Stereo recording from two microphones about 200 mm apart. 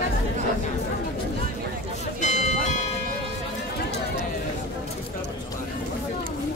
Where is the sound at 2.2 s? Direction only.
35° left (ahead or behind).